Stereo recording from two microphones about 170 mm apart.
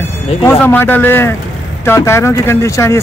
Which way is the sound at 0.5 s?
10° left (ahead or behind).